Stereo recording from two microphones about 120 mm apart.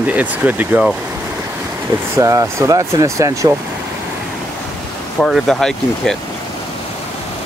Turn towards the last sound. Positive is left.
turn(degrees=5)  # may be behind; listen again after turning